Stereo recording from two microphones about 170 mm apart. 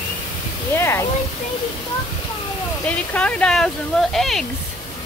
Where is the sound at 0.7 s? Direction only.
15° left (ahead or behind).